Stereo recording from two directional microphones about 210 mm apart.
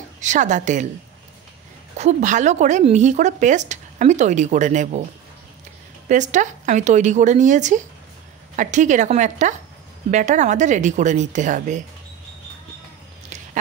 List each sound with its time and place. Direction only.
0.2 s speech: 35° right (ahead or behind)
2.0 s speech: 35° right (ahead or behind)
6.0 s speech: 35° right (ahead or behind)